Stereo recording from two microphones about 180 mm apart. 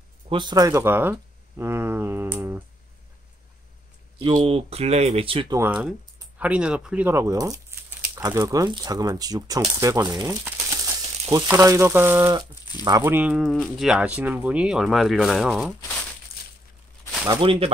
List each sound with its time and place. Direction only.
0.3 s speech: 25° right (ahead or behind)
4.2 s speech: 30° right (ahead or behind)
5.8 s speech: 5° right (ahead or behind)
10.2 s crumpling: 15° right (ahead or behind)
11.4 s speech: 15° right (ahead or behind)
16.3 s a sound: 55° left (ahead or behind)
17.3 s speech: 30° right (ahead or behind)